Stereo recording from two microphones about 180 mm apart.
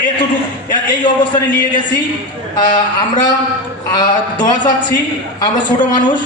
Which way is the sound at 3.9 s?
25° left (ahead or behind).